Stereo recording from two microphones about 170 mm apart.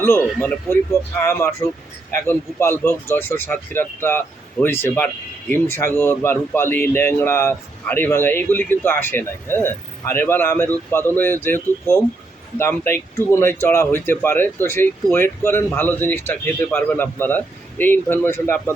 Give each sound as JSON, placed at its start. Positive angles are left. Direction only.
{"t": 0.0, "sound": "speech", "side_deg": 15}